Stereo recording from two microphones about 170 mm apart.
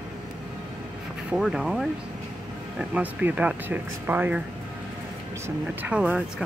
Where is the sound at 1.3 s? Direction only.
Centre (ahead or behind).